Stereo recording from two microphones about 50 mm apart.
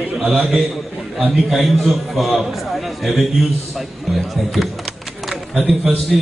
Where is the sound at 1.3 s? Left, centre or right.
Centre.